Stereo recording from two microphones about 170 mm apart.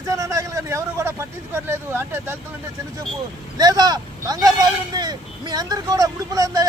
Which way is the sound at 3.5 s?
25° right (ahead or behind).